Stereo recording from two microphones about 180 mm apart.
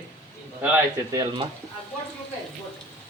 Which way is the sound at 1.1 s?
20° right (ahead or behind).